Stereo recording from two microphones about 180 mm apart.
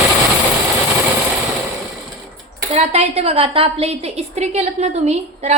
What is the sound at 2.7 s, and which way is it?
A woman's voice, 35° right (ahead or behind).